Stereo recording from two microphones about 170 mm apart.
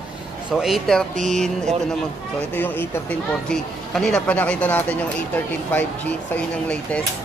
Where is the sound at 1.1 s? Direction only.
45° right (ahead or behind).